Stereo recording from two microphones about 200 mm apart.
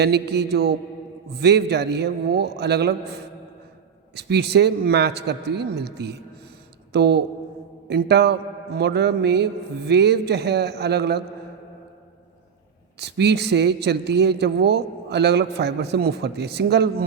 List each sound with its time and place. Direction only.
0.0 s speech: 55° right (ahead or behind)
4.1 s speech: 55° right (ahead or behind)
13.0 s speech: 55° right (ahead or behind)